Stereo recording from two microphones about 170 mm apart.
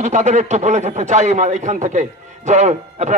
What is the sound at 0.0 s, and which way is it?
Speech, 45° right (ahead or behind).